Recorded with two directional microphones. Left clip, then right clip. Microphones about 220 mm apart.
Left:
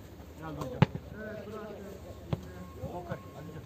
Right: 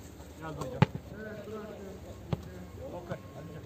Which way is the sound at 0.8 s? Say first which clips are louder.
Even; 20° right (ahead or behind).